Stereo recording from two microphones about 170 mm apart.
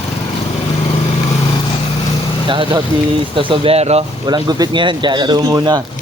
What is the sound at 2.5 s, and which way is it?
Speech, 30° right (ahead or behind).